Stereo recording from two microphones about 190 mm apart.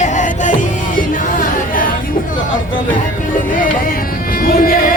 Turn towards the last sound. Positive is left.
turn(degrees=50)  # may be behind; listen again after turning